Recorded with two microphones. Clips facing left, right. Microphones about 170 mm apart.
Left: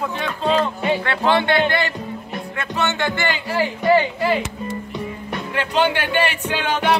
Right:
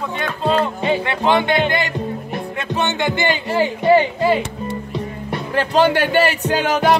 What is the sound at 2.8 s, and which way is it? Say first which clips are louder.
Speech: right 2 dB; 15° right (ahead or behind).